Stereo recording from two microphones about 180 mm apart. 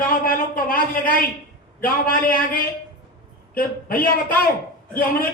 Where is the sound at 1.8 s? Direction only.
50° left (ahead or behind).